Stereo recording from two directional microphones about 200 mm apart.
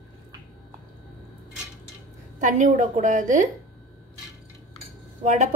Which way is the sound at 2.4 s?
40° right (ahead or behind).